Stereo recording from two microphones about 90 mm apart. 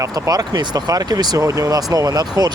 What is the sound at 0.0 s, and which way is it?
Speech, 45° right (ahead or behind).